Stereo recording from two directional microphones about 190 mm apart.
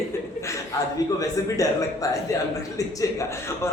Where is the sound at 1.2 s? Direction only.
15° left (ahead or behind).